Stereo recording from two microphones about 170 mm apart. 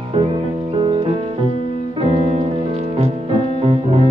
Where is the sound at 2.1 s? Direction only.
35° right (ahead or behind).